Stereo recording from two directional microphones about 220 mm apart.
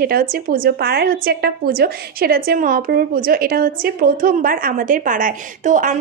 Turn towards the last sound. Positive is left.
turn(degrees=-35)  # may be behind; listen again after turning